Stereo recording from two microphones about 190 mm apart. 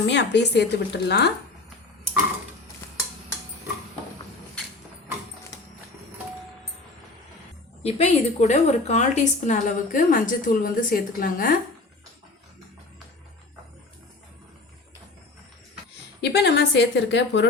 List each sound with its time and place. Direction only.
0.1 s a woman's voice: 65° left (ahead or behind)
7.8 s a woman's voice: 35° left (ahead or behind)
16.2 s a woman's voice: 60° left (ahead or behind)